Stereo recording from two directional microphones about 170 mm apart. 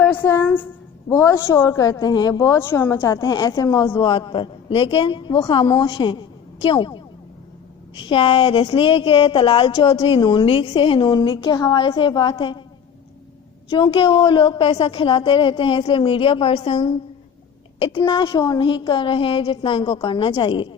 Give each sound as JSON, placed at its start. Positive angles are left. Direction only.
{"t": 0.0, "sound": "a woman's voice", "side_deg": 10}
{"t": 13.7, "sound": "a woman's voice", "side_deg": 25}